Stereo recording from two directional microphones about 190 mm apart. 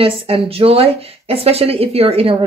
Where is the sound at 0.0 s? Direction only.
30° right (ahead or behind).